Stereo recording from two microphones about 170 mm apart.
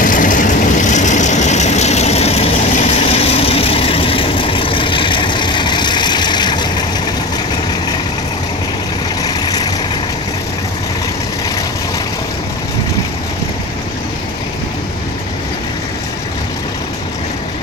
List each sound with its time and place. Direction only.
0.0 s vehicle: 50° left (ahead or behind); by 6.7 s 25° left (ahead or behind)
9.2 s vehicle: 25° left (ahead or behind)